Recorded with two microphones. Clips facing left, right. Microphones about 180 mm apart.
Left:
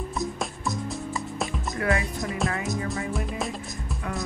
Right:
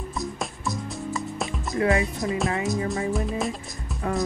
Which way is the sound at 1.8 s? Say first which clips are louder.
Right 4 dB; 25° right (ahead or behind).